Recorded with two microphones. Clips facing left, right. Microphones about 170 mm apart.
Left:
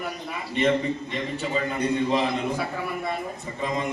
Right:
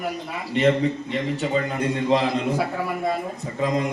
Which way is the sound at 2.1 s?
90° right.